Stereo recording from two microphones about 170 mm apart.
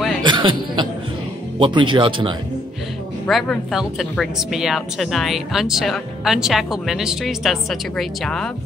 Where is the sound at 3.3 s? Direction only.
Centre (ahead or behind).